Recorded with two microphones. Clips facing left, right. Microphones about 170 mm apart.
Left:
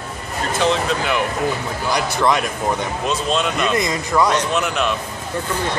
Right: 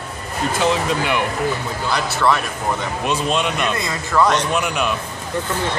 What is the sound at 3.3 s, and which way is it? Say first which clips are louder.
Speech: left 3 dB; 5° right (ahead or behind).